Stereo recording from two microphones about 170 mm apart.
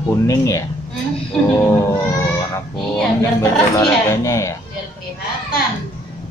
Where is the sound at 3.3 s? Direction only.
15° left (ahead or behind).